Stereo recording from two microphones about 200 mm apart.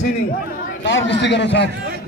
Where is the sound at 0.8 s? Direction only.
60° left (ahead or behind).